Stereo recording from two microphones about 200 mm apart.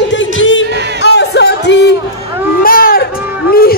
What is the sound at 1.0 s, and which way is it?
Music, 55° left (ahead or behind).